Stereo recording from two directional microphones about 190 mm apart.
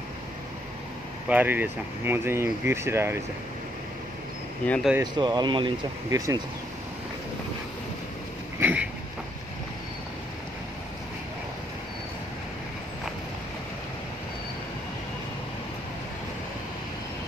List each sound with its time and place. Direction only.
1.3 s speech: 10° right (ahead or behind)
4.6 s speech: 5° left (ahead or behind)
4.9 s speech: 20° right (ahead or behind)
8.5 s a sound: 10° right (ahead or behind)